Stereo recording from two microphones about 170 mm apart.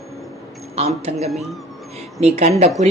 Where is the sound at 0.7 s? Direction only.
40° right (ahead or behind).